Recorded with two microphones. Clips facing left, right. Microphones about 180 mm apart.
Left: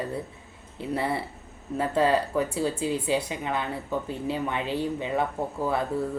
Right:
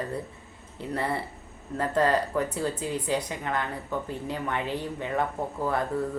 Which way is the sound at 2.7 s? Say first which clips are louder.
Left 4 dB; 25° left (ahead or behind).